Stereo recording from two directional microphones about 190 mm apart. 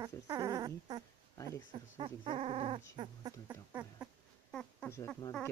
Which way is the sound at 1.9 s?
30° right (ahead or behind).